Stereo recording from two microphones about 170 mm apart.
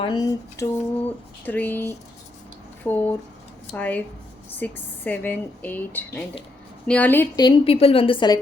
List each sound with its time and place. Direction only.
0.0 s speech: 25° left (ahead or behind)
1.5 s speech: 10° left (ahead or behind)
7.3 s a woman's voice: 30° left (ahead or behind)